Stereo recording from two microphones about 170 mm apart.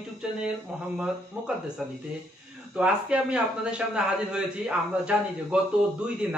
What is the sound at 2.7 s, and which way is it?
A man's voice, 5° right (ahead or behind).